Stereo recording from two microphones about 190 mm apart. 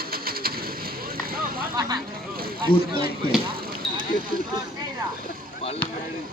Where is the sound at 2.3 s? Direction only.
50° right (ahead or behind).